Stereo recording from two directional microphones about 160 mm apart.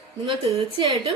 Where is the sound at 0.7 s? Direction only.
30° right (ahead or behind).